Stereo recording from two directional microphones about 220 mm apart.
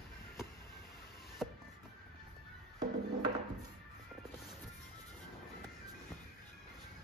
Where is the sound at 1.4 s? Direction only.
Centre (ahead or behind).